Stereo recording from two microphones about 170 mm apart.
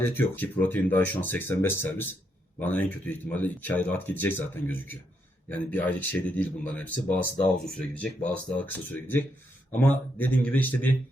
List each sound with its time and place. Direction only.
0.0 s speech: 10° left (ahead or behind)